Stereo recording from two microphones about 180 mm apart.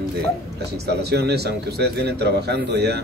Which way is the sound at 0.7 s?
65° right (ahead or behind).